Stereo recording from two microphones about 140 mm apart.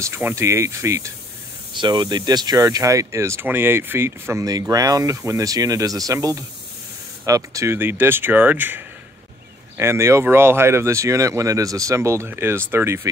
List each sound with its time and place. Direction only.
0.0 s speech: 20° right (ahead or behind)
1.7 s speech: 35° right (ahead or behind); by 13.1 s 20° right (ahead or behind)